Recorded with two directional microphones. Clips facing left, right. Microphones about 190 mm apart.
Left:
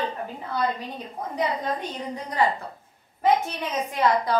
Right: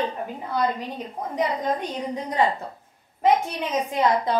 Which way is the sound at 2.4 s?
25° right (ahead or behind).